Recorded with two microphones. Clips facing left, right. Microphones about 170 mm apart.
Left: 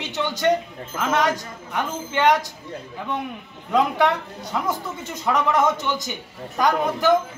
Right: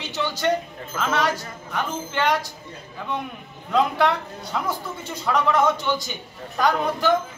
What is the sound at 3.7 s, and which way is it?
Speech, 15° left (ahead or behind).